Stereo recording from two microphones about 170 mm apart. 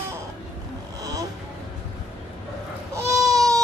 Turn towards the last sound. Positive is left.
turn(degrees=-20)  # may be behind; listen again after turning